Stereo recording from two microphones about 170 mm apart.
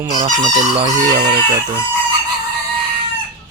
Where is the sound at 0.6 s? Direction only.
40° right (ahead or behind).